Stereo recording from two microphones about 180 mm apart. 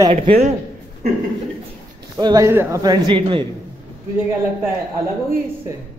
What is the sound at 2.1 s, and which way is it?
Speech, 20° right (ahead or behind).